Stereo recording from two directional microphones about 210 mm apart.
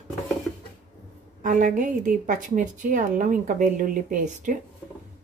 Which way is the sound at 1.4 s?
40° right (ahead or behind).